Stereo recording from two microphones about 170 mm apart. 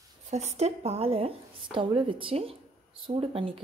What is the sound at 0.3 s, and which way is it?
A woman's voice, 40° right (ahead or behind).